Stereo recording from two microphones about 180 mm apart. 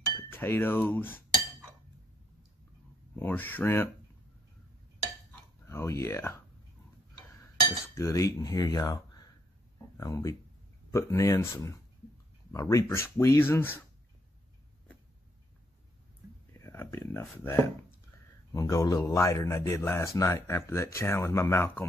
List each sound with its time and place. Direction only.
0.3 s speech: 10° left (ahead or behind)
3.2 s speech: 10° left (ahead or behind)
5.7 s speech: 15° left (ahead or behind)
7.7 s cutlery: 15° left (ahead or behind)
9.9 s speech: 20° left (ahead or behind)
16.5 s speech: 15° left (ahead or behind)